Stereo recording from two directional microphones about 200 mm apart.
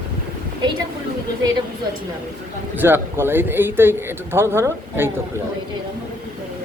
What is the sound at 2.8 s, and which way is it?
Speech, 10° right (ahead or behind).